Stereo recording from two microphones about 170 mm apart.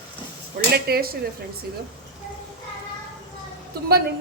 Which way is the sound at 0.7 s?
65° right (ahead or behind).